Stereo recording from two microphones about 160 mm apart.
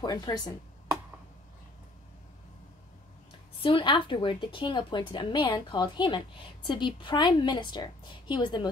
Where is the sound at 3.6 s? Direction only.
30° left (ahead or behind).